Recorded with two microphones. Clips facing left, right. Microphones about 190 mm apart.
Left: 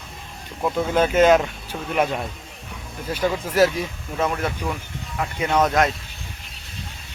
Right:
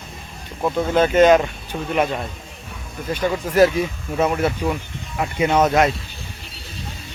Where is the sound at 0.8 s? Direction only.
10° left (ahead or behind).